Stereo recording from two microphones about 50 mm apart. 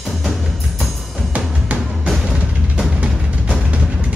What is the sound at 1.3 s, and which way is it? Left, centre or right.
Music, right.